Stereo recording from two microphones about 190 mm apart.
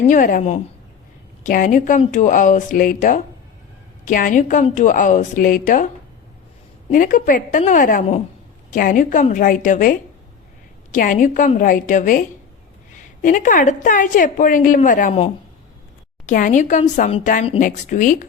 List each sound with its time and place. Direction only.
0.1 s a woman's voice: 45° left (ahead or behind)
6.9 s a woman's voice: 45° left (ahead or behind)
10.9 s a woman's voice: 45° left (ahead or behind)
16.2 s a woman's voice: 45° left (ahead or behind)
17.6 s a woman's voice: 45° left (ahead or behind)